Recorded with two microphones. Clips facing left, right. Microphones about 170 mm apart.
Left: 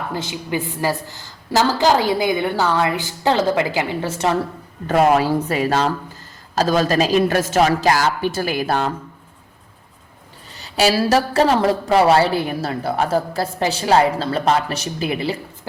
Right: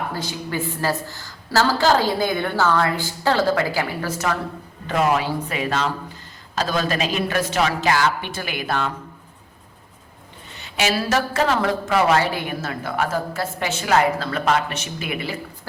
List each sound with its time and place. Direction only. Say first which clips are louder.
0.1 s a woman's voice: left 3 dB; 20° left (ahead or behind)
4.9 s a woman's voice: left 5 dB; 45° left (ahead or behind)
10.5 s a woman's voice: left 5 dB; 35° left (ahead or behind)